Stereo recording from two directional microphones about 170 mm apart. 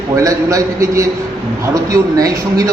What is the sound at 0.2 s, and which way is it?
A man's voice, 20° right (ahead or behind).